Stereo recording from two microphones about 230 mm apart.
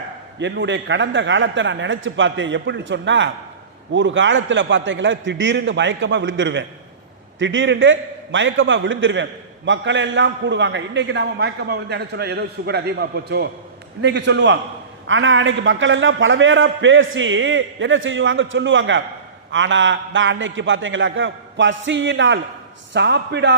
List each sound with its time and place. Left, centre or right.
0.3 s a man's voice: right